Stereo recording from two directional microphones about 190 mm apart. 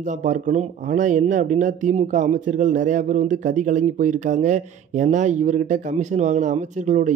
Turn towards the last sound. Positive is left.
turn(degrees=-40)  # may be behind; listen again after turning